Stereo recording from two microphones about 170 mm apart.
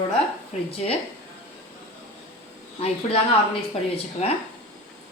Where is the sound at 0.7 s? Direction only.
35° left (ahead or behind).